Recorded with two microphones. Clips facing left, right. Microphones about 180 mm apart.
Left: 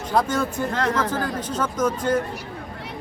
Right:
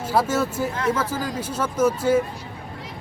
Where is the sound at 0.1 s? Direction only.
5° right (ahead or behind).